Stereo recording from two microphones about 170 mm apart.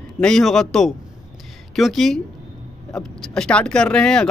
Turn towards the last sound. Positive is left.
turn(degrees=5)  # may be behind; listen again after turning